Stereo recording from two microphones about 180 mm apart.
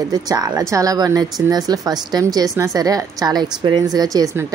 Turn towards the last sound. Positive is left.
turn(degrees=-15)  # may be behind; listen again after turning